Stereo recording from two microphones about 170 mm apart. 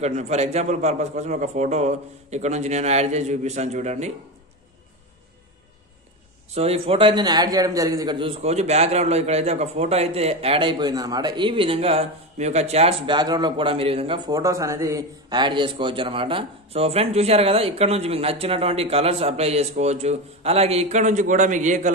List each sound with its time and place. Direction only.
0.0 s a man's voice: 40° right (ahead or behind)
6.5 s a man's voice: 35° right (ahead or behind)